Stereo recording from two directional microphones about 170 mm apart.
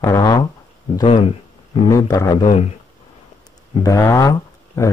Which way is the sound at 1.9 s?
20° left (ahead or behind).